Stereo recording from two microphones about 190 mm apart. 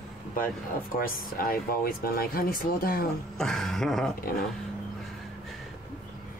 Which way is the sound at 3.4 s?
Centre (ahead or behind).